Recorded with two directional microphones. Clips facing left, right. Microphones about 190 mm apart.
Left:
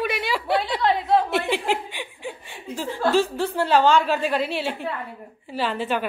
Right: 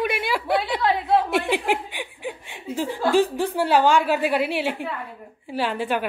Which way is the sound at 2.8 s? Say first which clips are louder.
Right 1 dB; 15° right (ahead or behind).